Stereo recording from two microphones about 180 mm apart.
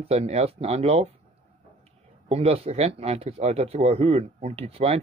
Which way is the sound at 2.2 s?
35° right (ahead or behind).